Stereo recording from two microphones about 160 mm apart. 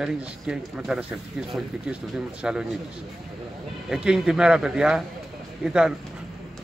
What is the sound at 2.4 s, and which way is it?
Speech, 5° right (ahead or behind).